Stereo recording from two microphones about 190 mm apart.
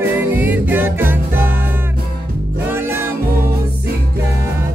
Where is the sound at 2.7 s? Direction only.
10° right (ahead or behind).